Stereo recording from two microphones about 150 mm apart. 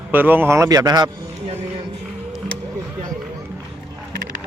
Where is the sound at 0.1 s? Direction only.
15° right (ahead or behind).